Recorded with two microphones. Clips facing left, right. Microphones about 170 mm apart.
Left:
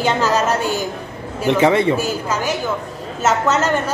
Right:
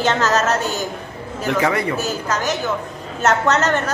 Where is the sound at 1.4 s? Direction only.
25° left (ahead or behind).